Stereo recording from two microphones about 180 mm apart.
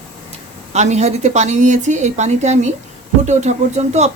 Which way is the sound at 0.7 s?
40° right (ahead or behind).